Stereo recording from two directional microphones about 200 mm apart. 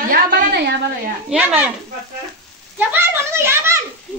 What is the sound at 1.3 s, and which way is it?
Speech, 5° right (ahead or behind).